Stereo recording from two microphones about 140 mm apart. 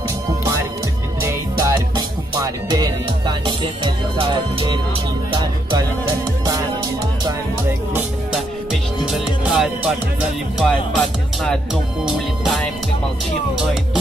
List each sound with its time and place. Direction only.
1.2 s music: 25° right (ahead or behind)
9.1 s music: centre (ahead or behind)
10.6 s speech: 5° left (ahead or behind)
12.0 s music: centre (ahead or behind)